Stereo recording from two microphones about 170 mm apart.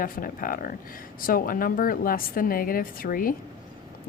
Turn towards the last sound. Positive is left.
turn(degrees=55)  # may be behind; listen again after turning